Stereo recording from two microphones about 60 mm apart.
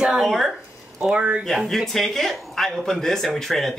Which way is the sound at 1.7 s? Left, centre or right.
Centre.